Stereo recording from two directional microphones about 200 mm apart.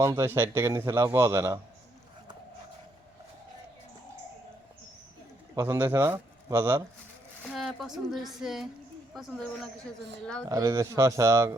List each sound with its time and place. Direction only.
0.0 s speech: 15° right (ahead or behind)
5.5 s speech: 10° right (ahead or behind)
7.5 s a woman's voice: centre (ahead or behind)
10.5 s speech: 15° right (ahead or behind)